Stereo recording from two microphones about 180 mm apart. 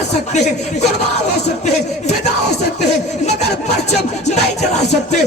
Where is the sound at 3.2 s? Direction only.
40° left (ahead or behind).